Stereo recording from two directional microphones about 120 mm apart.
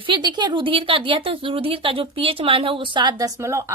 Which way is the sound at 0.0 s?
40° right (ahead or behind).